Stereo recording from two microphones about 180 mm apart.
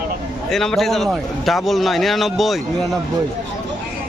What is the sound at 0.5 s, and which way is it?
A man's voice, centre (ahead or behind).